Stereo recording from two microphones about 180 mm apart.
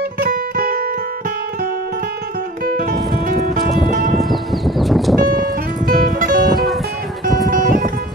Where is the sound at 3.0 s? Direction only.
Centre (ahead or behind).